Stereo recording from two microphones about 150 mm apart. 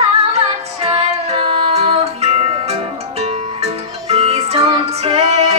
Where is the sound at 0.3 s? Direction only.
45° right (ahead or behind).